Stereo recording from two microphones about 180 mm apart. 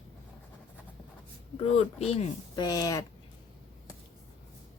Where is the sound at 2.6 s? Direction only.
20° left (ahead or behind).